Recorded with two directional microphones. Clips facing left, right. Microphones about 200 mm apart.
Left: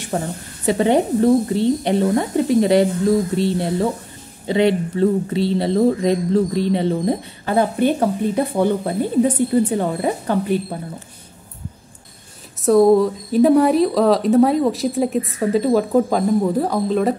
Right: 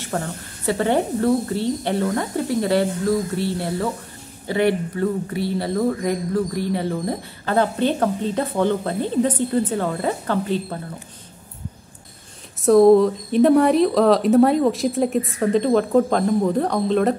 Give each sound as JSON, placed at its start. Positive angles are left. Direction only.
{"t": 0.1, "sound": "speech", "side_deg": 20}
{"t": 12.6, "sound": "speech", "side_deg": 0}